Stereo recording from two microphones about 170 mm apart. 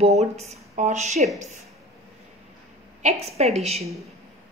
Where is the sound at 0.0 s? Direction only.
40° right (ahead or behind).